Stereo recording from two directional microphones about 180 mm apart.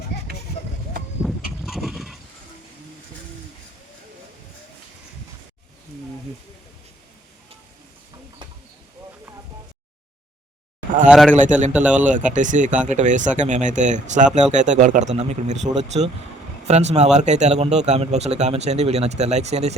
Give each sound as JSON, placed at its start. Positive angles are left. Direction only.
{"t": 1.2, "sound": "vehicle", "side_deg": 0}
{"t": 8.4, "sound": "a sound", "side_deg": -25}
{"t": 11.1, "sound": "a man's voice", "side_deg": 0}
{"t": 12.1, "sound": "a man's voice", "side_deg": -45}